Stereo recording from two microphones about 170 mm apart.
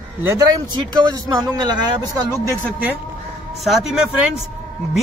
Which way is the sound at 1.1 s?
25° right (ahead or behind).